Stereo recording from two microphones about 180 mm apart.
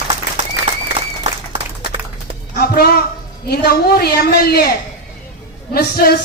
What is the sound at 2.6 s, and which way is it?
A woman's voice, 60° left (ahead or behind).